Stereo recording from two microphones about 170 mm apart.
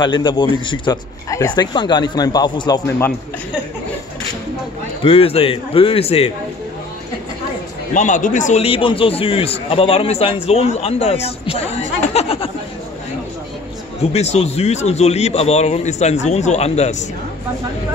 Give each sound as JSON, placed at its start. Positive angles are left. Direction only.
{"t": 0.0, "sound": "speech", "side_deg": 25}
{"t": 5.0, "sound": "a man's voice", "side_deg": 35}
{"t": 7.9, "sound": "a man's voice", "side_deg": 50}
{"t": 8.6, "sound": "a man's voice", "side_deg": 30}
{"t": 14.1, "sound": "a man's voice", "side_deg": 40}